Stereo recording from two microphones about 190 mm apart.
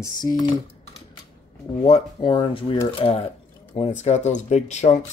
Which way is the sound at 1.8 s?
30° left (ahead or behind).